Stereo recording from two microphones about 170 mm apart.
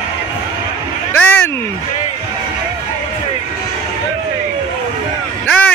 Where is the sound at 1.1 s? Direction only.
10° left (ahead or behind).